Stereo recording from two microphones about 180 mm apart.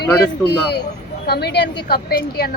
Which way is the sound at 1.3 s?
65° left (ahead or behind).